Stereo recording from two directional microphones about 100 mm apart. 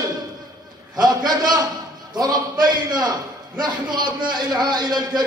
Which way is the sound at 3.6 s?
50° right (ahead or behind).